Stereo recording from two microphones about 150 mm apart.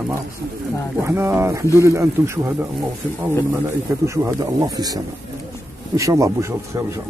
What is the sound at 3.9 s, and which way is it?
Speech, 20° right (ahead or behind).